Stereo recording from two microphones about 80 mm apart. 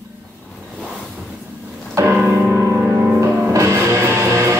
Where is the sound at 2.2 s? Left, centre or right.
Centre.